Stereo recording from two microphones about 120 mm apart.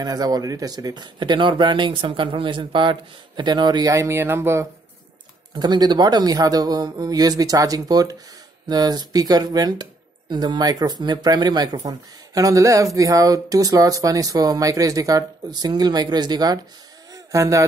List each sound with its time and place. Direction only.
0.0 s speech: 30° right (ahead or behind)
5.5 s speech: 35° right (ahead or behind)